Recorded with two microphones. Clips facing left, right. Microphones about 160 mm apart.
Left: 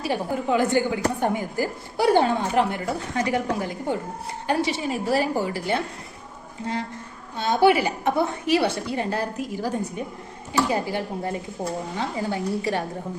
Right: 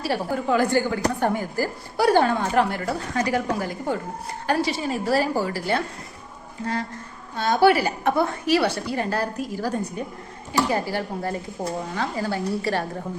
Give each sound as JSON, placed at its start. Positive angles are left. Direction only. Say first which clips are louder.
{"t": 0.0, "sound": "a woman's voice", "louder": "right 1 dB", "side_deg": 20}
{"t": 7.3, "sound": "a woman's voice", "louder": "right 1 dB", "side_deg": 20}